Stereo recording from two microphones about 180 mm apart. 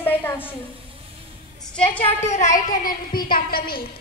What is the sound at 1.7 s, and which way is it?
Speech, 10° left (ahead or behind).